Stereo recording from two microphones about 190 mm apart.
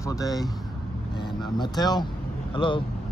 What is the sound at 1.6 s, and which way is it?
Speech, 20° left (ahead or behind).